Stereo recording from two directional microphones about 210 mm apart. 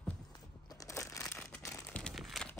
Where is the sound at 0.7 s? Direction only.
15° left (ahead or behind).